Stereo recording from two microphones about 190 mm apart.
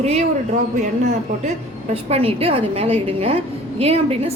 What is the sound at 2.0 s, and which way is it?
A woman's voice, 30° right (ahead or behind).